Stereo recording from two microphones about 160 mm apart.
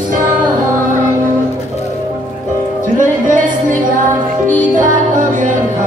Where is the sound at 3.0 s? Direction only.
55° right (ahead or behind).